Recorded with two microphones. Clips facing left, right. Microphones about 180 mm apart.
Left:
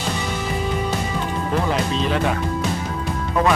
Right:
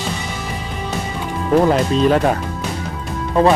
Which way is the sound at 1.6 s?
45° right (ahead or behind).